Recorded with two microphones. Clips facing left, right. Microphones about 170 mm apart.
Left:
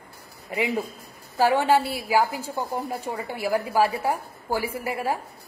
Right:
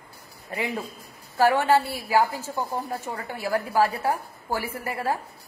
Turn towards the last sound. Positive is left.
turn(degrees=15)  # may be behind; listen again after turning